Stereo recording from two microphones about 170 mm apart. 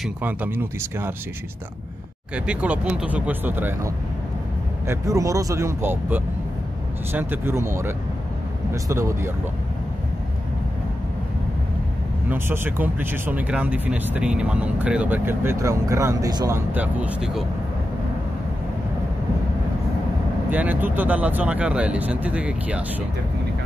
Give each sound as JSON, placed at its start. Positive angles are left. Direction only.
{"t": 0.0, "sound": "speech", "side_deg": -10}
{"t": 2.3, "sound": "speech", "side_deg": -5}
{"t": 12.3, "sound": "speech", "side_deg": -15}
{"t": 20.4, "sound": "speech", "side_deg": -10}